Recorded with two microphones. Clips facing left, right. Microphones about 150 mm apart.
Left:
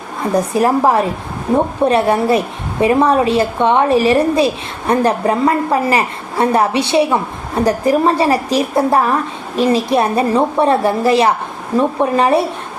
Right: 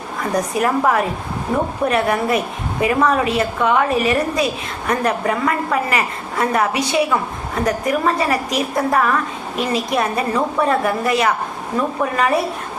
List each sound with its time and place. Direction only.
0.2 s a woman's voice: 30° left (ahead or behind)